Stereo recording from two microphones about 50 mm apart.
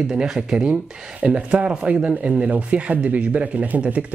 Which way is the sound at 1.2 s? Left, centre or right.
Right.